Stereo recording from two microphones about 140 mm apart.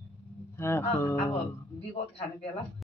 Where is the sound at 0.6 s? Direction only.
20° left (ahead or behind).